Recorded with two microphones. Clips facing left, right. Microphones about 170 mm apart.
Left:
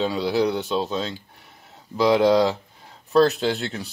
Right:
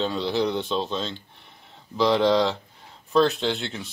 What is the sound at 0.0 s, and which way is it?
Speech, 5° left (ahead or behind).